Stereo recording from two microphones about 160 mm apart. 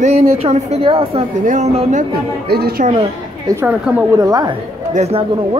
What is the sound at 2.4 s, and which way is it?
Speech, 80° right.